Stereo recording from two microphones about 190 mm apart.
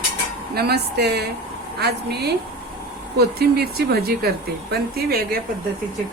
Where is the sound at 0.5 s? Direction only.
55° right (ahead or behind).